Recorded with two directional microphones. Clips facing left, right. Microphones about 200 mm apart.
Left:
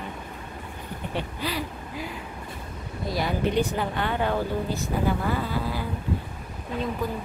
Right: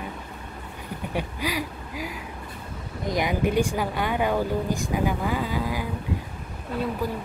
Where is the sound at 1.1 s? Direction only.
10° right (ahead or behind).